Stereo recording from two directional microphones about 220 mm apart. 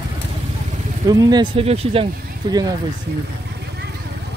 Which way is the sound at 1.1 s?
20° right (ahead or behind).